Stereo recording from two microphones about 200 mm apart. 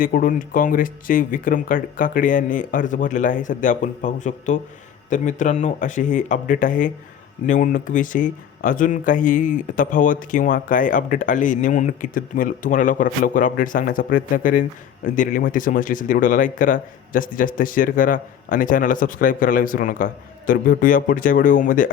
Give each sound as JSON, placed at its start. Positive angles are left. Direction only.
{"t": 0.0, "sound": "speech", "side_deg": 45}